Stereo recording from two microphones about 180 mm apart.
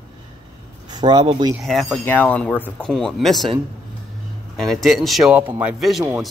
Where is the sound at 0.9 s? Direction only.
25° right (ahead or behind).